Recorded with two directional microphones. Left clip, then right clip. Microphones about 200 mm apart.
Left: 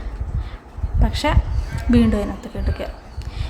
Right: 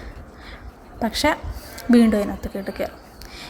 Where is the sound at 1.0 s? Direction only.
15° right (ahead or behind).